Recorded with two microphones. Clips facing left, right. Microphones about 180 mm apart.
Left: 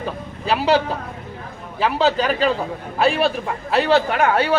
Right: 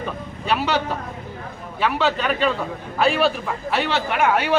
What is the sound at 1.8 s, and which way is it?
Speech, 35° left (ahead or behind).